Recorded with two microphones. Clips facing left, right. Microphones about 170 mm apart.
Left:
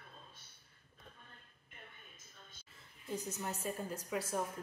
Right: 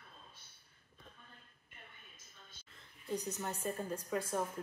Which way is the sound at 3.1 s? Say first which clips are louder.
Right 2 dB; 5° left (ahead or behind).